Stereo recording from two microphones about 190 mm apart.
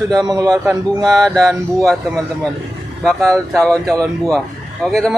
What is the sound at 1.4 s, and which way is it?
Speech, centre (ahead or behind).